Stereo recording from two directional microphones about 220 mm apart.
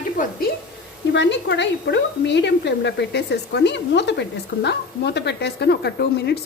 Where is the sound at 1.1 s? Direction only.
55° left (ahead or behind).